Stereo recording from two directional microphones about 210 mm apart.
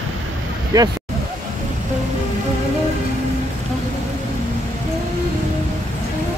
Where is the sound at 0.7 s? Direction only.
15° right (ahead or behind).